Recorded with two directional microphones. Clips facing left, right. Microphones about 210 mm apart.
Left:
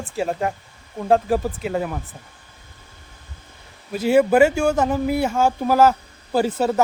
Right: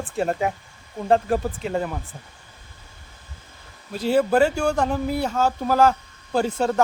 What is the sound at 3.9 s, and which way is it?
Speech, 10° left (ahead or behind).